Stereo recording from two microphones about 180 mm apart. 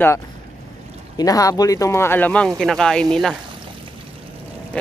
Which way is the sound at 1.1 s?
20° left (ahead or behind).